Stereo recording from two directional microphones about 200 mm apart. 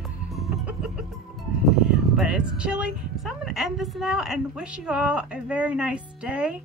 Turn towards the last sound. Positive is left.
turn(degrees=-5)  # may be behind; listen again after turning